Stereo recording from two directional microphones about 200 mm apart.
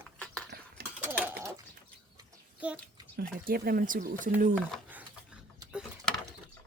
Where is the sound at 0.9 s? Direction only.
10° right (ahead or behind).